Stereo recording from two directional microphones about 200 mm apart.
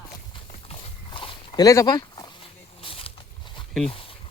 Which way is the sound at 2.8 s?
30° left (ahead or behind).